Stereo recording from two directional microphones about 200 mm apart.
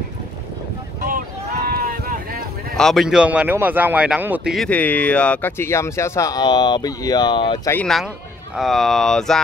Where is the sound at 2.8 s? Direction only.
Centre (ahead or behind); by 7.7 s 20° left (ahead or behind).